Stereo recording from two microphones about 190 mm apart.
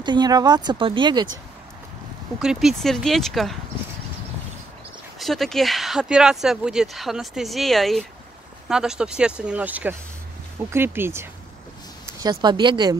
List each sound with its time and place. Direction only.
0.0 s speech: 25° right (ahead or behind)
2.4 s speech: 5° right (ahead or behind)
5.2 s speech: centre (ahead or behind); by 12.9 s 20° right (ahead or behind)